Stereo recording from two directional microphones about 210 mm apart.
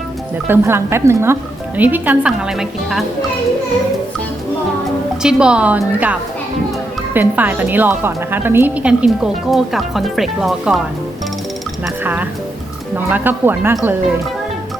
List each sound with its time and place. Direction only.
0.4 s a woman's voice: 10° right (ahead or behind)
5.2 s a woman's voice: 5° right (ahead or behind)
12.0 s a woman's voice: 10° right (ahead or behind)